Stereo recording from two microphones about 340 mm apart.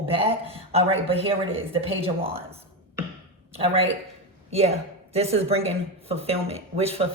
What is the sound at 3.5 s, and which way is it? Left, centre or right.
Speech, centre.